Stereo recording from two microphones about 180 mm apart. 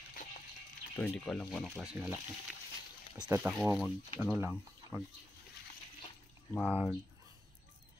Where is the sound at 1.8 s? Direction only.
10° right (ahead or behind).